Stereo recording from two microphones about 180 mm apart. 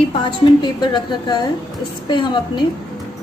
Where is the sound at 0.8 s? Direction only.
25° left (ahead or behind).